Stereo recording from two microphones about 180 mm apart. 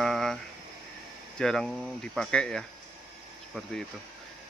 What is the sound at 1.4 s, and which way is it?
Speech, centre (ahead or behind).